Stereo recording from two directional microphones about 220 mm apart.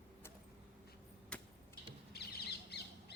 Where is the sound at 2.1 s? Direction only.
50° left (ahead or behind).